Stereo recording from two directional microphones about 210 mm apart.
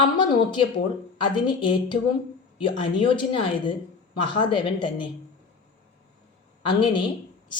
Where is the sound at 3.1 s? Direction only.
25° left (ahead or behind).